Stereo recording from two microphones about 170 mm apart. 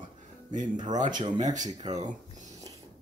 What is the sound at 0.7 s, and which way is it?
Speech, 25° right (ahead or behind).